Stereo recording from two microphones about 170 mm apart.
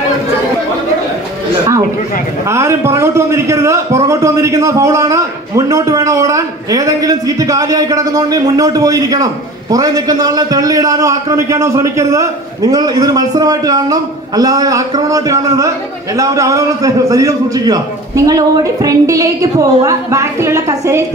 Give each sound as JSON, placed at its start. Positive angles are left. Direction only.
{"t": 2.5, "sound": "a man's voice", "side_deg": -15}